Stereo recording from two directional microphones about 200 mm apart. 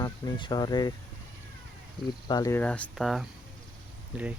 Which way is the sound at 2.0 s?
20° left (ahead or behind).